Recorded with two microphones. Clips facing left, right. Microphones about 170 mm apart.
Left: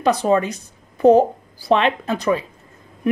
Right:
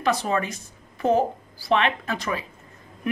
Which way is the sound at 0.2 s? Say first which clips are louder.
Left 8 dB; 35° left (ahead or behind).